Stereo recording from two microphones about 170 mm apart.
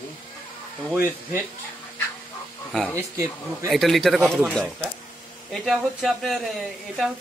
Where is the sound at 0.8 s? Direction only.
10° right (ahead or behind).